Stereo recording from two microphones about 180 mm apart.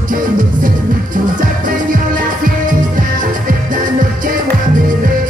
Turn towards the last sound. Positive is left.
turn(degrees=-50)  # may be behind; listen again after turning